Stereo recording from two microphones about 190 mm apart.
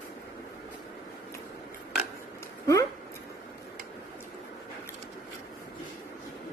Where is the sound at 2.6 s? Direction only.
15° left (ahead or behind).